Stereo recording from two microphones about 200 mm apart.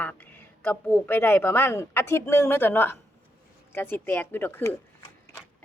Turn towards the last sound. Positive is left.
turn(degrees=10)  # may be behind; listen again after turning